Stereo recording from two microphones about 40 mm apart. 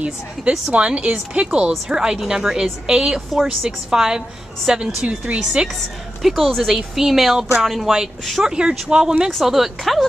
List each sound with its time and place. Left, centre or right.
0.0 s a woman's voice: right; by 4.9 s centre
5.0 s speech: right
6.2 s a woman's voice: centre; by 9.1 s right
9.3 s speech: centre